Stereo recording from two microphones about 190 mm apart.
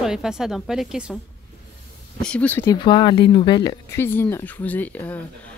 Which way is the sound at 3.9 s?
10° left (ahead or behind).